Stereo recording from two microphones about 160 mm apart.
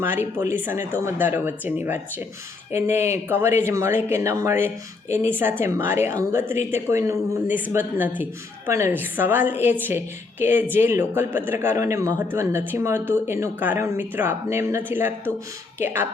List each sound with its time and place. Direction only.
0.0 s speech: 15° right (ahead or behind)
5.0 s speech: 45° left (ahead or behind)
5.3 s speech: 15° right (ahead or behind)